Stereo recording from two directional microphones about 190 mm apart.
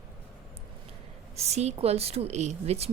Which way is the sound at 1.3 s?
35° right (ahead or behind).